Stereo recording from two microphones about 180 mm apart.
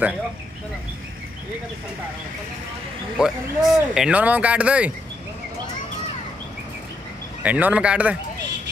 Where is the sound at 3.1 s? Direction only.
5° right (ahead or behind).